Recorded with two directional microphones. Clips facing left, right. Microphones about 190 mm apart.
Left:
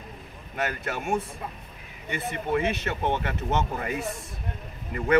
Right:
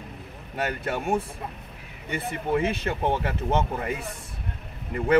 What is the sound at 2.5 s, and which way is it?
Speech, 30° right (ahead or behind).